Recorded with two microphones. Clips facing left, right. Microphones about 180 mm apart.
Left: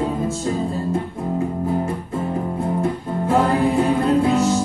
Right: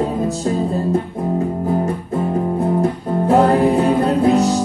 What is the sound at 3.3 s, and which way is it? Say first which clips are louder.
Music: right 4 dB; 40° right (ahead or behind).